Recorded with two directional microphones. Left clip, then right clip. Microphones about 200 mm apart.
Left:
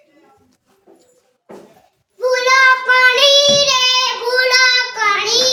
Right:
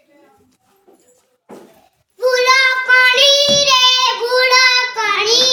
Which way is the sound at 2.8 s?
15° left (ahead or behind).